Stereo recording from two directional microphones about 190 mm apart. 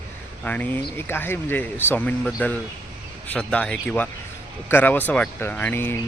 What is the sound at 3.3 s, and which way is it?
Speech, 5° left (ahead or behind).